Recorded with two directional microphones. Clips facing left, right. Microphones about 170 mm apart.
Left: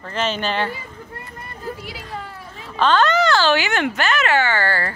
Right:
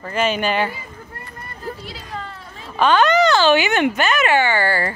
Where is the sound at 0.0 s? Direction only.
10° right (ahead or behind).